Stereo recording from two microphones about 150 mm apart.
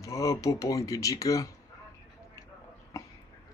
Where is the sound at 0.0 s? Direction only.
20° left (ahead or behind).